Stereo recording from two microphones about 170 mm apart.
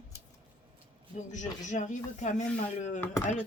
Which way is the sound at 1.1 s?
45° left (ahead or behind).